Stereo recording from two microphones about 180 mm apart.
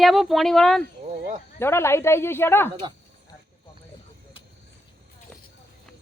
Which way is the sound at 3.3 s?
20° left (ahead or behind).